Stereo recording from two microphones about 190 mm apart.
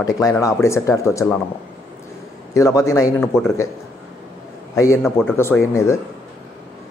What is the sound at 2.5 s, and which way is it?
Speech, 15° left (ahead or behind).